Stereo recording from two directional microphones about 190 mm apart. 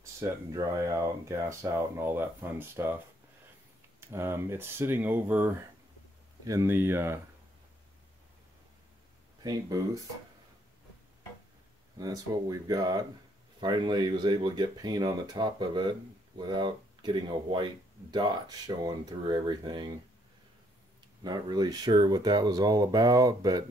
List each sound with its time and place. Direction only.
0.0 s speech: 15° right (ahead or behind)
4.1 s speech: 15° right (ahead or behind)
9.4 s speech: 20° right (ahead or behind)
12.0 s speech: 20° right (ahead or behind)
18.9 s speech: 20° right (ahead or behind)
21.2 s speech: 20° right (ahead or behind)